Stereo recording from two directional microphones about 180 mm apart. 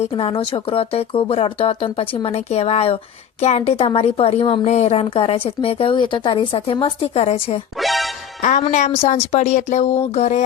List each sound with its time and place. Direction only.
0.0 s a woman's voice: 30° left (ahead or behind)
7.8 s music: centre (ahead or behind)
8.4 s a woman's voice: 45° left (ahead or behind)